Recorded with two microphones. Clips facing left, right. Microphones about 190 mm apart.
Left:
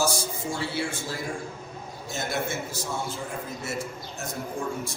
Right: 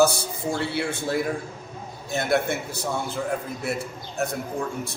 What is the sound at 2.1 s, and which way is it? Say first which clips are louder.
A man's voice: right 7 dB; 60° right (ahead or behind).